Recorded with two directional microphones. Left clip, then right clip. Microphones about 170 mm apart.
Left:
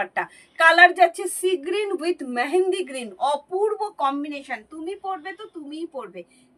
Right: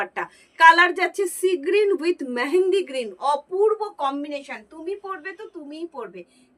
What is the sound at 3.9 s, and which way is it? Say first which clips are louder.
Speech: left 2 dB; 15° left (ahead or behind).